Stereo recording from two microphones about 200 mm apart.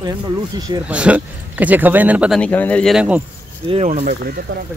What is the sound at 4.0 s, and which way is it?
Speech, 50° right (ahead or behind).